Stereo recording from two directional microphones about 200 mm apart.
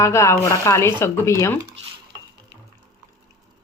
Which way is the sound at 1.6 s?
30° right (ahead or behind).